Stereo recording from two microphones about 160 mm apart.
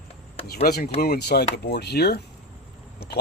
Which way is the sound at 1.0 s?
85° left.